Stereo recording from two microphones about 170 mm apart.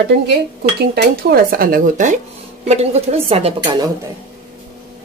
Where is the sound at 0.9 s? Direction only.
60° right (ahead or behind); by 3.8 s 35° right (ahead or behind).